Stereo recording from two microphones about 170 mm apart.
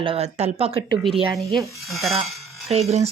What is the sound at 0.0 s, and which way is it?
Speech, 35° right (ahead or behind).